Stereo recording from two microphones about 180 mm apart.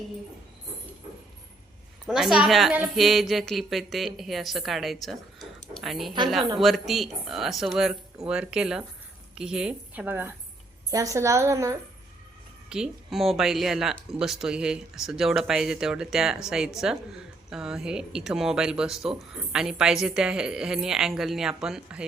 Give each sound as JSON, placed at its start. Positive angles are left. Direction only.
{"t": 2.0, "sound": "a woman's voice", "side_deg": -5}
{"t": 12.6, "sound": "speech", "side_deg": -5}